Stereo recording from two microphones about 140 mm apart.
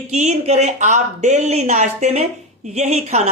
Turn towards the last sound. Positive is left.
turn(degrees=-50)  # may be behind; listen again after turning